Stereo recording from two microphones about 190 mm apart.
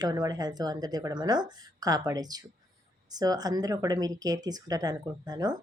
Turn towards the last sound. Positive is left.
turn(degrees=-20)  # may be behind; listen again after turning